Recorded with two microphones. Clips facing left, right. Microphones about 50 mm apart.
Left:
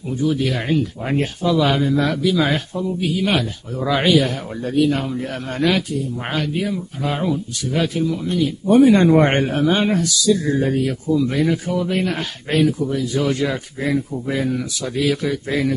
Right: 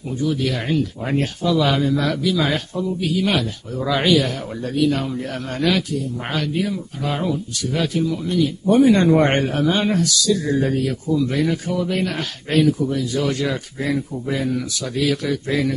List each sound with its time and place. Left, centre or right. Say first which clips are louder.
0.2 s a man's voice: left 2 dB; centre
3.8 s a man's voice: left 1 dB; centre